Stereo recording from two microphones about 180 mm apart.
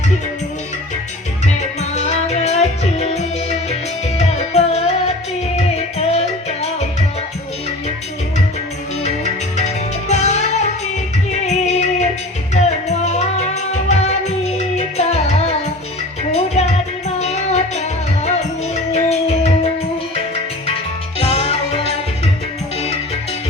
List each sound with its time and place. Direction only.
1.8 s music: 40° left (ahead or behind)
9.0 s music: 40° left (ahead or behind)